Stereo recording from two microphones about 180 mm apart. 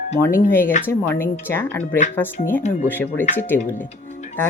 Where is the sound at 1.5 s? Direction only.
10° left (ahead or behind).